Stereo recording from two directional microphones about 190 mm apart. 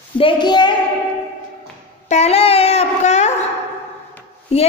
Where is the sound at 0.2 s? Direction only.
25° left (ahead or behind).